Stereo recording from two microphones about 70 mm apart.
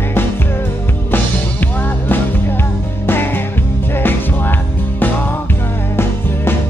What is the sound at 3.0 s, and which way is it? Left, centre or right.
Music, left.